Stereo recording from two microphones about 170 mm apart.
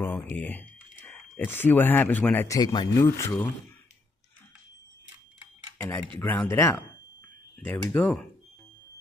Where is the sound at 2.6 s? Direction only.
25° left (ahead or behind).